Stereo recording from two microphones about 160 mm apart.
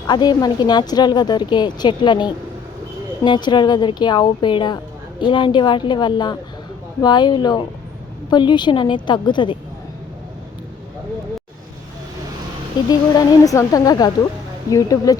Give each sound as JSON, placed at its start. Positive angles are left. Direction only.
{"t": 0.1, "sound": "a woman's voice", "side_deg": 25}
{"t": 12.9, "sound": "a woman's voice", "side_deg": 20}